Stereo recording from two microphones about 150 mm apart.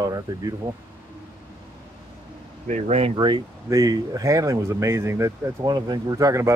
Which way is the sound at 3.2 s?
30° right (ahead or behind).